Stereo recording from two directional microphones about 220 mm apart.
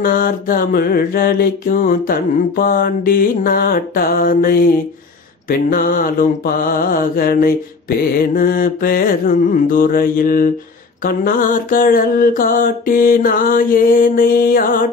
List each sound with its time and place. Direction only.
0.0 s mantra: 40° left (ahead or behind)